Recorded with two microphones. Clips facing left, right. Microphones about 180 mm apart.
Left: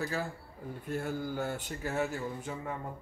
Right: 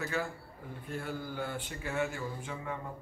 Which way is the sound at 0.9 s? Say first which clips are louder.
Left 4 dB; 45° left (ahead or behind).